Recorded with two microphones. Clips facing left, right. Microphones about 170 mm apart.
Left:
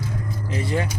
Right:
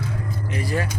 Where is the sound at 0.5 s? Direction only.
20° left (ahead or behind).